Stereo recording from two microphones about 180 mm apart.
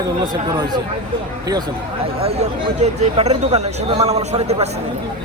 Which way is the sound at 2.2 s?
35° right (ahead or behind).